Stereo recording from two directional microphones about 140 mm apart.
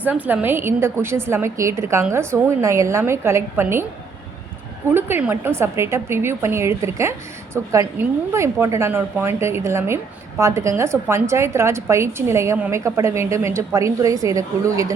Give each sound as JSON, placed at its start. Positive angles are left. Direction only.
{"t": 0.0, "sound": "a woman's voice", "side_deg": -10}
{"t": 4.9, "sound": "a woman's voice", "side_deg": -15}